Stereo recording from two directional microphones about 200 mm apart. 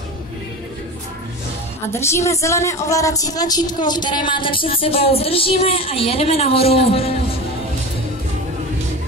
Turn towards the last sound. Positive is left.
turn(degrees=30)  # may be behind; listen again after turning